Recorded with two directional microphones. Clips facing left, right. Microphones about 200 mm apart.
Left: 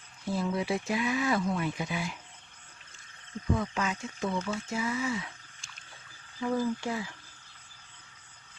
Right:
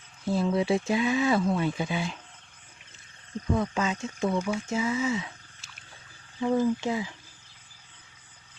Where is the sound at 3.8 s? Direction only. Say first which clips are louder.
Right 4 dB; 25° right (ahead or behind).